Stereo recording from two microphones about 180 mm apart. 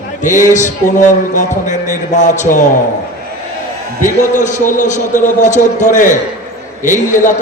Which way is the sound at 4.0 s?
45° left (ahead or behind).